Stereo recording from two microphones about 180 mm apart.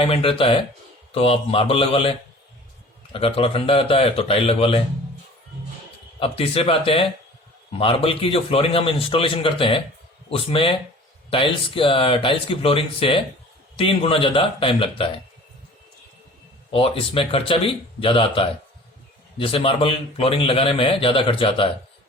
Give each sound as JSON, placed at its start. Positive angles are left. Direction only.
{"t": 0.0, "sound": "a man's voice", "side_deg": 30}
{"t": 6.1, "sound": "a man's voice", "side_deg": 30}
{"t": 16.7, "sound": "a man's voice", "side_deg": 30}